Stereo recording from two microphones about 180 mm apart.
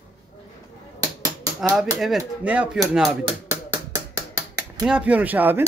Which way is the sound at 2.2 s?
5° right (ahead or behind).